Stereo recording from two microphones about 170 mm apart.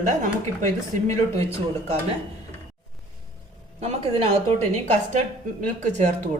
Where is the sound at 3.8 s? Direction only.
35° right (ahead or behind).